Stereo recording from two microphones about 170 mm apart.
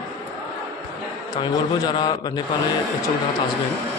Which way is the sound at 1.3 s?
25° left (ahead or behind).